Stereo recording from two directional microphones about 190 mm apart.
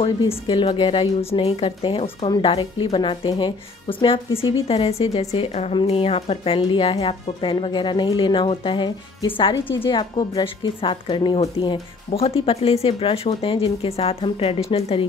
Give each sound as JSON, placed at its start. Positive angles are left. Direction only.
{"t": 0.5, "sound": "a woman's voice", "side_deg": 25}